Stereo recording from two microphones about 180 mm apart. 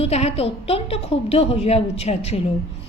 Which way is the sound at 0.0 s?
35° left (ahead or behind).